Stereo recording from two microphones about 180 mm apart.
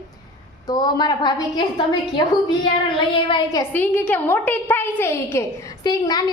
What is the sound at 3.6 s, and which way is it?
A woman's voice, 10° left (ahead or behind).